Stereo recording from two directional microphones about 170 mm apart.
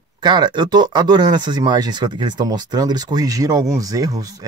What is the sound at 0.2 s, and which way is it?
Speech, 25° right (ahead or behind).